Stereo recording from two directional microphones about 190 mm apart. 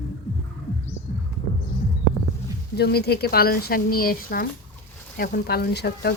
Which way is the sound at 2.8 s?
55° left (ahead or behind).